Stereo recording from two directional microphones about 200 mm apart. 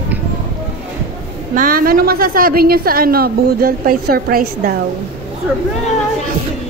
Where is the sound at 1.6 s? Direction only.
45° right (ahead or behind).